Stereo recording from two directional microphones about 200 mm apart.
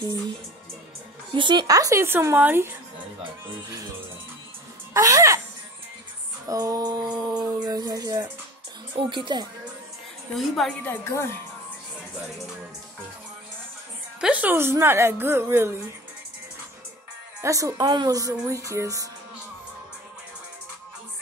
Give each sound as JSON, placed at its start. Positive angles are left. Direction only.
{"t": 1.3, "sound": "speech", "side_deg": -25}
{"t": 4.9, "sound": "speech", "side_deg": -15}
{"t": 6.4, "sound": "a sound", "side_deg": -15}
{"t": 10.3, "sound": "a woman's voice", "side_deg": 0}
{"t": 14.2, "sound": "speech", "side_deg": -10}
{"t": 17.4, "sound": "speech", "side_deg": -15}